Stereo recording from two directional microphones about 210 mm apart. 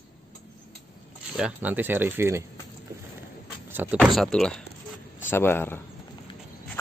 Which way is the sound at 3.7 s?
10° right (ahead or behind).